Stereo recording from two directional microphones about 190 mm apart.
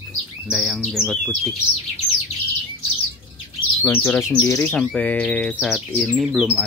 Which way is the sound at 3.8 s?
10° left (ahead or behind).